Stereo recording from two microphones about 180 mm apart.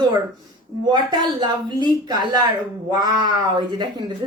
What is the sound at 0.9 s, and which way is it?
Speech, 25° right (ahead or behind).